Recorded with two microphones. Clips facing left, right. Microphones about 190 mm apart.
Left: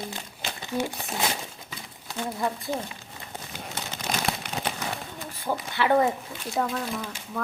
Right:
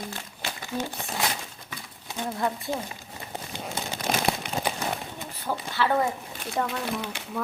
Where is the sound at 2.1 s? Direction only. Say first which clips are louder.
Even; 20° right (ahead or behind).